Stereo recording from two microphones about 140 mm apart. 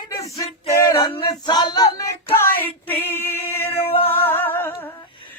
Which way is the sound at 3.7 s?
40° left (ahead or behind).